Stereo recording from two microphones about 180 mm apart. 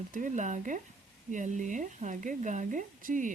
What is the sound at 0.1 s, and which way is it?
Speech, 45° right (ahead or behind).